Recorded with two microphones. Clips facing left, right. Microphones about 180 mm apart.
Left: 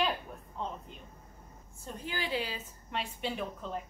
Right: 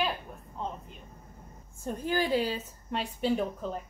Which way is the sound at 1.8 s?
45° right (ahead or behind).